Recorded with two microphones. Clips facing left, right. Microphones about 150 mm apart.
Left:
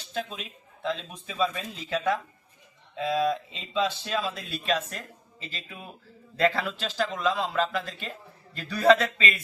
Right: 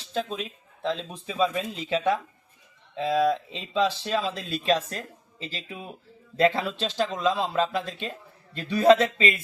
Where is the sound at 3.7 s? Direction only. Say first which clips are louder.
Right 3 dB; 35° right (ahead or behind).